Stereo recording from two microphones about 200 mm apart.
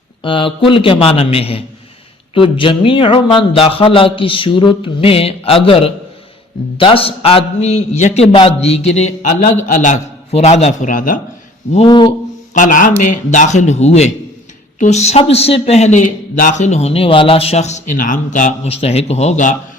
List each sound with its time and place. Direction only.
0.2 s a man's voice: 25° left (ahead or behind); by 11.2 s 40° left (ahead or behind)
11.7 s speech: 25° left (ahead or behind)
12.5 s a man's voice: 40° left (ahead or behind)